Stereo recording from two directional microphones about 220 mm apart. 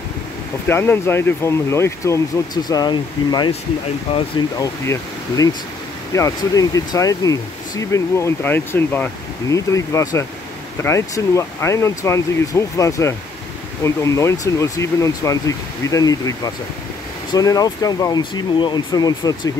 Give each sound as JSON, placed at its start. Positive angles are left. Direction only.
{"t": 0.7, "sound": "speech", "side_deg": 10}